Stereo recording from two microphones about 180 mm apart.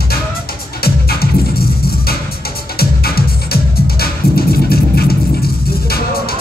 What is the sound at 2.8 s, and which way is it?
Music, 60° left (ahead or behind).